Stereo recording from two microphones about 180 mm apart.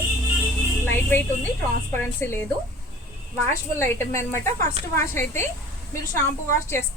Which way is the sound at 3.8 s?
15° left (ahead or behind).